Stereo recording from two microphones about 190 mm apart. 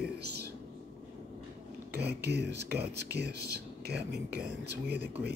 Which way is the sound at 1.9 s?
60° right (ahead or behind).